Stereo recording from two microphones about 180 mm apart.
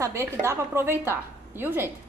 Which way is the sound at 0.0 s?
15° right (ahead or behind).